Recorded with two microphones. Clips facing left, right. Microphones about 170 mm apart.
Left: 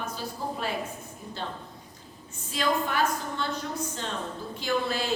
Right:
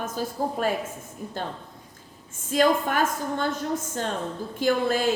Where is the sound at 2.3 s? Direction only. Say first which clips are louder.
Right 7 dB; 50° right (ahead or behind).